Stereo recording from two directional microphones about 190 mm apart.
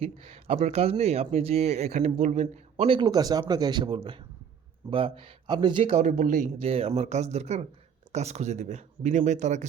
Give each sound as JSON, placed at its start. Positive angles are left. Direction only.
{"t": 0.0, "sound": "speech", "side_deg": -30}